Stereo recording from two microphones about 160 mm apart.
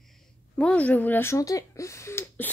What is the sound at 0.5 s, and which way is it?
Speech, 5° left (ahead or behind).